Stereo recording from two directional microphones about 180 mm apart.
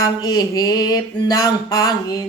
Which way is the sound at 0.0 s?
20° left (ahead or behind).